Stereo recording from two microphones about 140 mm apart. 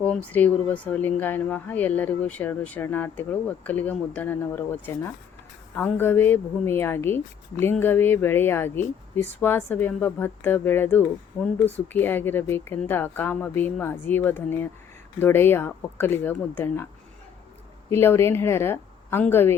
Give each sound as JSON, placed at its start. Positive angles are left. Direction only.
{"t": 0.0, "sound": "speech", "side_deg": 10}